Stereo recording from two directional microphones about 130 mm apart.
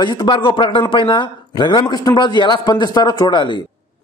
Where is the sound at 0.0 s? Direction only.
40° left (ahead or behind).